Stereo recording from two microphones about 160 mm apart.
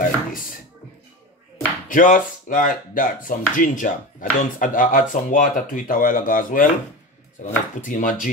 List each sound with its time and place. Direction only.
1.9 s speech: 55° left (ahead or behind)